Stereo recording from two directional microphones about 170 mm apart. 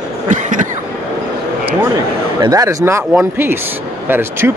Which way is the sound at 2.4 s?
20° right (ahead or behind).